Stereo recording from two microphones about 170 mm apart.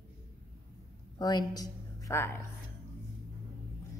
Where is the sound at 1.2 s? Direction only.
20° left (ahead or behind).